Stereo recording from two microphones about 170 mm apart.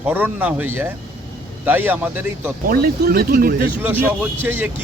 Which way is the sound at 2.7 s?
65° right (ahead or behind).